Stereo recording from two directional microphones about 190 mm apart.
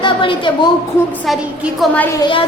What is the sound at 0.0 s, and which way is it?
Speech, 25° left (ahead or behind).